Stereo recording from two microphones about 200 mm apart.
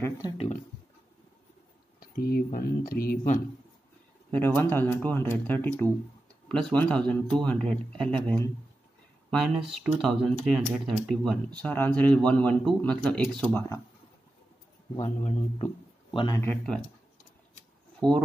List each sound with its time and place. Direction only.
2.0 s speech: 50° left (ahead or behind)
4.3 s speech: 10° left (ahead or behind)
15.0 s speech: 35° left (ahead or behind)
16.3 s speech: 5° left (ahead or behind)
18.0 s speech: 5° left (ahead or behind)